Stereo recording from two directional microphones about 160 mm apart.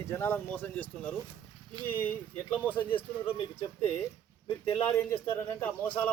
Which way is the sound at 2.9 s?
35° left (ahead or behind).